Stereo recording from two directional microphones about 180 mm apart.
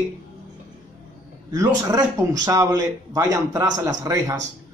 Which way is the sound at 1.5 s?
20° right (ahead or behind).